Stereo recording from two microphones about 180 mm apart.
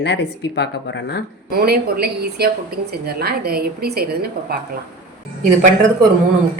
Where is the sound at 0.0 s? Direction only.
75° left (ahead or behind).